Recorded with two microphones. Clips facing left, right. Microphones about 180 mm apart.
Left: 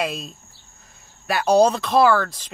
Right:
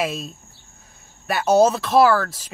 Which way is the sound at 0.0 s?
Centre (ahead or behind).